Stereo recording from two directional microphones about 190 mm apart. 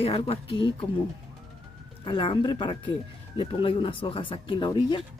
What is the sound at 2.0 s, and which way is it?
Speech, 25° left (ahead or behind).